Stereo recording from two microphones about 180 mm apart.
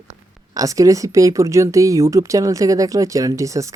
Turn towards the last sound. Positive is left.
turn(degrees=-15)  # may be behind; listen again after turning